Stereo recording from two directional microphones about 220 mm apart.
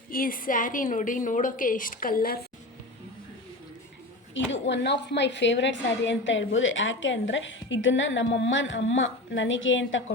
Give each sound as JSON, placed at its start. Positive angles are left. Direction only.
{"t": 0.1, "sound": "a woman's voice", "side_deg": 40}
{"t": 4.5, "sound": "a woman's voice", "side_deg": 55}